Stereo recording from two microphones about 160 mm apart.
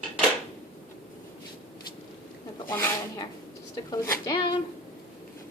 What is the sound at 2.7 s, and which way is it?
A woman's voice, 15° left (ahead or behind).